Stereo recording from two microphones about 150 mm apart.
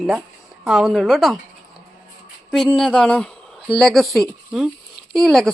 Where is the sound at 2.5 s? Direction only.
Centre (ahead or behind).